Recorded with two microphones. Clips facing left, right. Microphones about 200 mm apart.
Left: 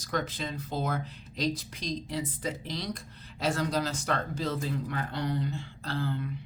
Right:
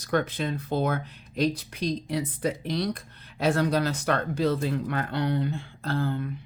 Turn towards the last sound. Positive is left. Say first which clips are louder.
# right 5 dB
turn(degrees=-50)  # may be behind; listen again after turning